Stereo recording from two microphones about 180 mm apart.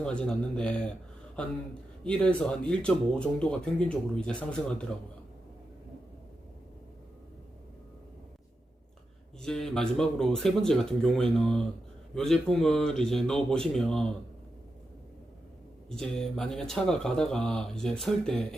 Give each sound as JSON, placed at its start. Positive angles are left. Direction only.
{"t": 0.0, "sound": "speech", "side_deg": 5}
{"t": 2.0, "sound": "speech", "side_deg": 5}
{"t": 9.4, "sound": "speech", "side_deg": 5}
{"t": 15.9, "sound": "speech", "side_deg": 5}